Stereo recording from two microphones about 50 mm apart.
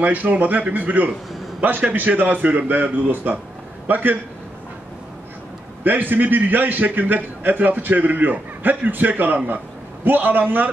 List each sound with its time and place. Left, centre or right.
0.0 s a man's voice: right
5.9 s a man's voice: right